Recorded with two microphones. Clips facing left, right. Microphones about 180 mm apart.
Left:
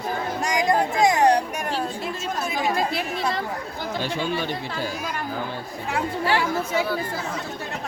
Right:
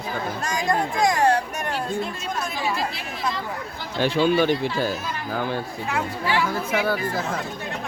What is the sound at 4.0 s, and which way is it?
Speech, 65° right (ahead or behind).